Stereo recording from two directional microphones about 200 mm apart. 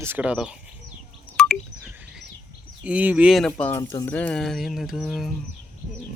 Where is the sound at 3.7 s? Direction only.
15° left (ahead or behind).